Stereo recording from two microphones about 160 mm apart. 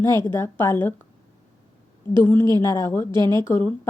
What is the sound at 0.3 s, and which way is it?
Speech, 15° left (ahead or behind).